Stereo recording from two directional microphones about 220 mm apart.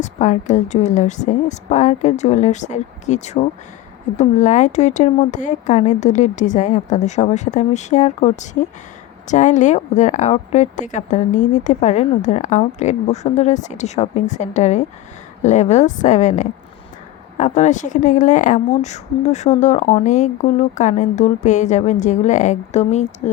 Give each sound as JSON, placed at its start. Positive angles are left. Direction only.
{"t": 0.0, "sound": "a woman's voice", "side_deg": 35}